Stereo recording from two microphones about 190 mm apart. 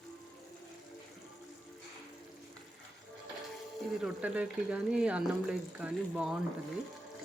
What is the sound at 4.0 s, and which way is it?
Speech, 5° right (ahead or behind).